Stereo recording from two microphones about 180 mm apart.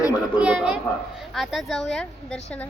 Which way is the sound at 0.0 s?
20° left (ahead or behind).